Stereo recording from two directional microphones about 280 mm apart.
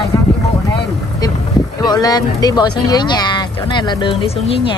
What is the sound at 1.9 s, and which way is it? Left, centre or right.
Speech, centre.